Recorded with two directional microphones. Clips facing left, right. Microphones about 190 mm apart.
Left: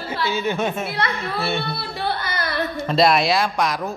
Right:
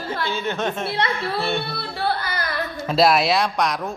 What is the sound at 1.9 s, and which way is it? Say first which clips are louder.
Carnatic music: right 3 dB; 20° left (ahead or behind).